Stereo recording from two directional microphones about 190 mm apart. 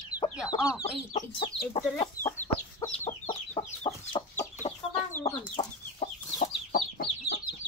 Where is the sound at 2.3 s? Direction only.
15° left (ahead or behind).